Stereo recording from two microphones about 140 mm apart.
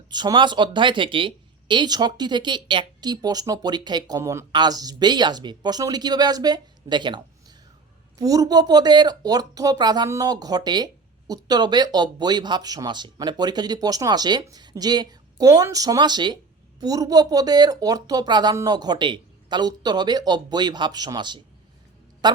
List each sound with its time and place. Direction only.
0.1 s a woman's voice: 30° right (ahead or behind)